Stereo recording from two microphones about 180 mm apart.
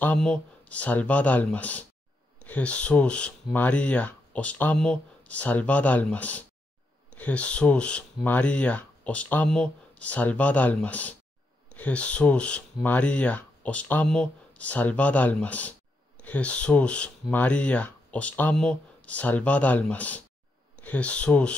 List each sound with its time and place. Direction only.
0.0 s speech: 5° left (ahead or behind)